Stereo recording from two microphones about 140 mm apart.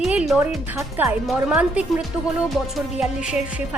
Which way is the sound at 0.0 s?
5° right (ahead or behind).